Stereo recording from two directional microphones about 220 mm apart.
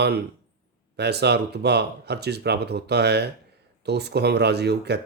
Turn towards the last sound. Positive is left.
turn(degrees=-50)  # may be behind; listen again after turning